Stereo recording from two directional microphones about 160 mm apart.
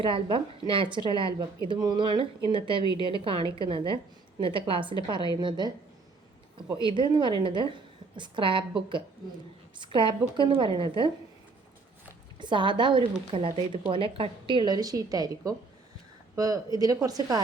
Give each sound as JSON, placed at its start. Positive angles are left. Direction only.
{"t": 0.0, "sound": "a woman's voice", "side_deg": -35}
{"t": 6.8, "sound": "a woman's voice", "side_deg": -30}
{"t": 9.7, "sound": "a woman's voice", "side_deg": -30}
{"t": 12.4, "sound": "a woman's voice", "side_deg": -30}